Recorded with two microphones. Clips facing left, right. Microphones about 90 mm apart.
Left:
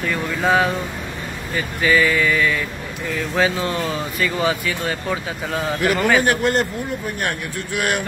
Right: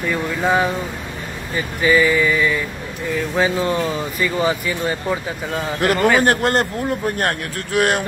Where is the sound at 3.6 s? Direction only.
20° right (ahead or behind).